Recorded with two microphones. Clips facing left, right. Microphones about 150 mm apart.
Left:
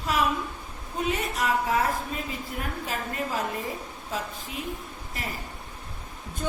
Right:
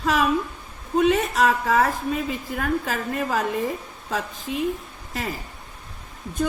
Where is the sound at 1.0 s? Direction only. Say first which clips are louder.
Right 9 dB; 85° right.